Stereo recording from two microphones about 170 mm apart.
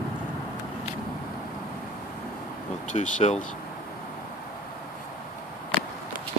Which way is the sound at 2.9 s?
45° left (ahead or behind).